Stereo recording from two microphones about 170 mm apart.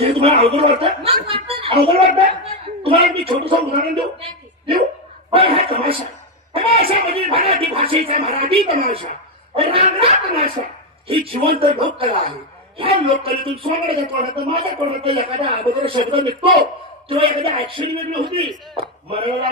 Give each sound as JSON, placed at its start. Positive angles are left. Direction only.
{"t": 0.0, "sound": "a woman's voice", "side_deg": -35}
{"t": 11.1, "sound": "speech", "side_deg": -30}